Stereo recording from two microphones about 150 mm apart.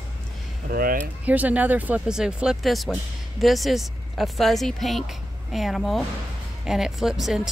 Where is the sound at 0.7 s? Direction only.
80° right.